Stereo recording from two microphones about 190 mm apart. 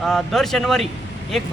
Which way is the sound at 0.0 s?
Centre (ahead or behind).